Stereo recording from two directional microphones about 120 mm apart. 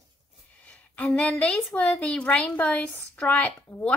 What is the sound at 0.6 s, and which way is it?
A woman's voice, 10° left (ahead or behind).